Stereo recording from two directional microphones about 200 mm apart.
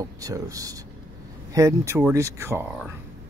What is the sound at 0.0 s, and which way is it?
Speech, 15° right (ahead or behind).